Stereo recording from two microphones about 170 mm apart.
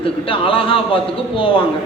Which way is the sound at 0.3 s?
30° left (ahead or behind).